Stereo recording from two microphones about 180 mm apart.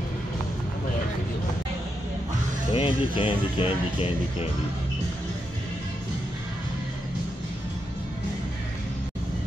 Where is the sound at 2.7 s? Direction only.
30° left (ahead or behind).